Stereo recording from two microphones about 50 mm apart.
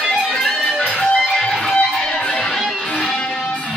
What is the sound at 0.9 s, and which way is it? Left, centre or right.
Music, centre.